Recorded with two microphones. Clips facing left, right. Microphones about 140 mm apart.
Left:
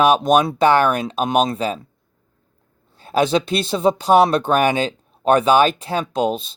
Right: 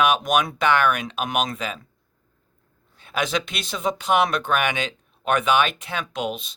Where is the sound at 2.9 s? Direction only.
35° left (ahead or behind).